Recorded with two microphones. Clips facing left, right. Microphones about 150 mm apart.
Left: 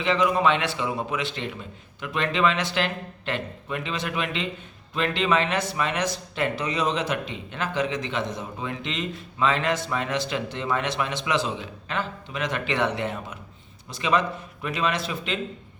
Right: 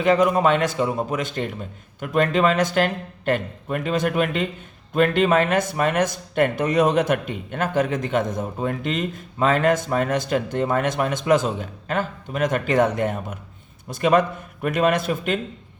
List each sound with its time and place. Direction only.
0.0 s speech: 45° right (ahead or behind)